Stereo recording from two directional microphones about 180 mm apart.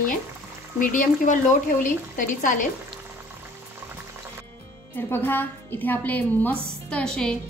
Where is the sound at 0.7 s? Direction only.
45° left (ahead or behind).